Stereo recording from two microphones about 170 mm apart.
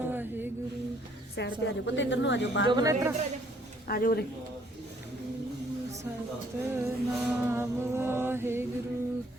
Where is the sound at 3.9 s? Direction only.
60° left (ahead or behind).